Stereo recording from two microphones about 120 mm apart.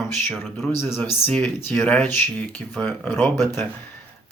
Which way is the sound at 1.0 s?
15° left (ahead or behind).